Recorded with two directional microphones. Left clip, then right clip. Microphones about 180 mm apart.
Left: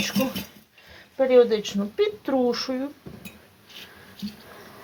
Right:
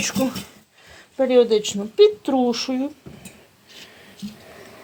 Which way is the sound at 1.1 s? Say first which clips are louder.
Right 2 dB; 45° right (ahead or behind).